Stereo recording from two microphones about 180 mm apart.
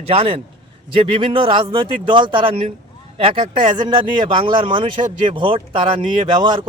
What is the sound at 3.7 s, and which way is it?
A man's voice, 25° right (ahead or behind).